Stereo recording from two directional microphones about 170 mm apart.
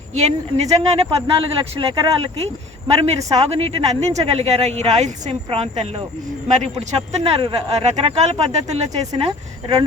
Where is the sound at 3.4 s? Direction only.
35° right (ahead or behind).